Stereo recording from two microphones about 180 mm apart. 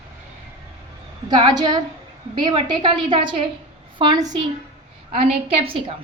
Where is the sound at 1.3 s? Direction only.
25° right (ahead or behind).